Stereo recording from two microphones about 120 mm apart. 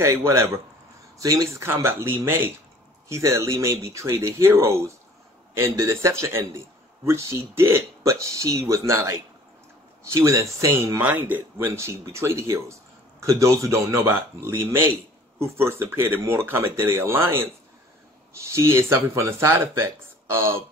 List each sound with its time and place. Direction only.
0.0 s speech: 20° right (ahead or behind)
11.0 s speech: 15° right (ahead or behind)